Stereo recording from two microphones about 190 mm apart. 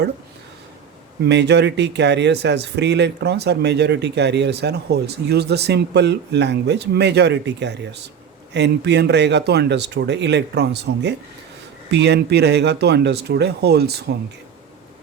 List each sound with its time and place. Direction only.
1.2 s speech: 65° right (ahead or behind)